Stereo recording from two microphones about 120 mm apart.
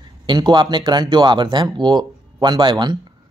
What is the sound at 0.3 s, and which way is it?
Speech, 40° right (ahead or behind).